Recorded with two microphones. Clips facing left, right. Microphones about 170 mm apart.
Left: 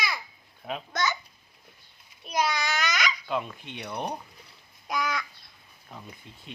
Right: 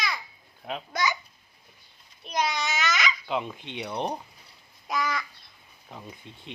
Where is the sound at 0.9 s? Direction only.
10° right (ahead or behind).